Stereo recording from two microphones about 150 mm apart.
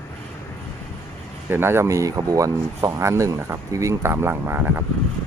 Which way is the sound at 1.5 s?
15° right (ahead or behind).